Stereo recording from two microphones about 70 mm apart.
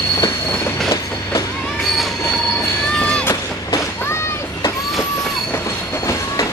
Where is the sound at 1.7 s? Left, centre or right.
Centre.